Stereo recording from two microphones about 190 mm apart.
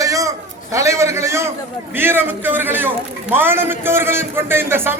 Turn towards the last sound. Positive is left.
turn(degrees=-10)  # may be behind; listen again after turning